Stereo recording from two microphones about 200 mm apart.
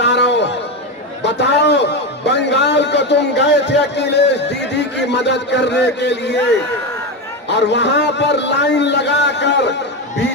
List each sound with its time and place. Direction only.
0.0 s a sound: 60° left (ahead or behind)
1.2 s a man's voice: 60° left (ahead or behind)
7.4 s a man's voice: 60° left (ahead or behind)